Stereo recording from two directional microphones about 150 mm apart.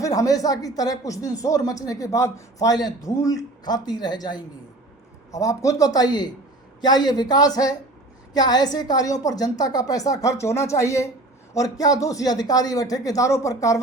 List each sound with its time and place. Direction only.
0.0 s speech: 25° left (ahead or behind)